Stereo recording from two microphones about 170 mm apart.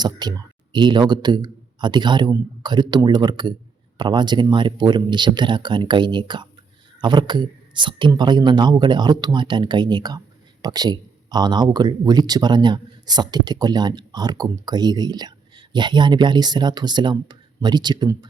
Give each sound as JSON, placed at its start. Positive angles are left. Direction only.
{"t": 0.0, "sound": "speech", "side_deg": -25}